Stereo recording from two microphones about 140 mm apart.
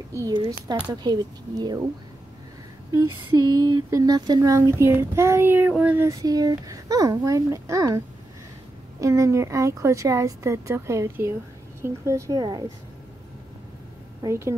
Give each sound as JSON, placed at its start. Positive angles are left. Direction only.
{"t": 0.1, "sound": "speech", "side_deg": -25}
{"t": 2.9, "sound": "speech", "side_deg": -25}
{"t": 6.0, "sound": "speech", "side_deg": -25}
{"t": 9.0, "sound": "speech", "side_deg": -20}
{"t": 14.2, "sound": "speech", "side_deg": -20}